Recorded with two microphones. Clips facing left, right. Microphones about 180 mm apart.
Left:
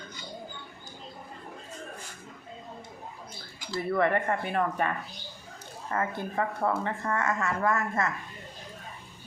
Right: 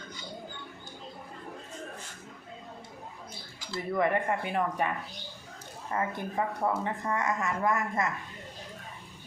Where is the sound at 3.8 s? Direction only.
15° right (ahead or behind).